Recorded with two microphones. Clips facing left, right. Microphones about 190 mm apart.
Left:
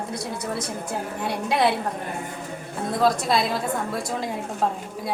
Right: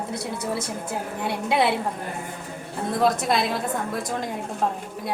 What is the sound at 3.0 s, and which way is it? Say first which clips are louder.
A woman's voice: left 1 dB; centre (ahead or behind).